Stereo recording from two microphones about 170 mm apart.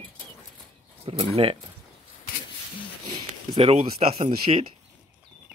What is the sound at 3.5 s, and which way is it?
Speech, 35° right (ahead or behind).